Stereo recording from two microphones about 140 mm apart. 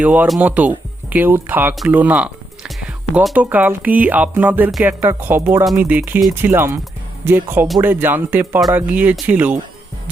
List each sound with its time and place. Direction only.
0.0 s speech: 10° right (ahead or behind)
6.4 s speech: 20° right (ahead or behind)